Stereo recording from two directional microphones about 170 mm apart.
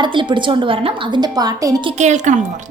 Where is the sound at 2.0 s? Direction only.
45° right (ahead or behind).